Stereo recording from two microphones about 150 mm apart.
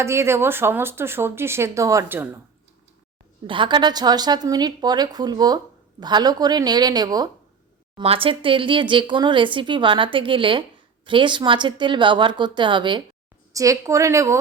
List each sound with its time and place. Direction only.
0.0 s speech: 20° right (ahead or behind)
3.4 s a woman's voice: 35° right (ahead or behind)
7.9 s a woman's voice: 40° right (ahead or behind); by 14.3 s 20° right (ahead or behind)